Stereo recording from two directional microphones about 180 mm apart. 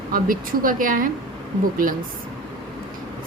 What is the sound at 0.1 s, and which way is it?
A woman's voice, 50° right (ahead or behind).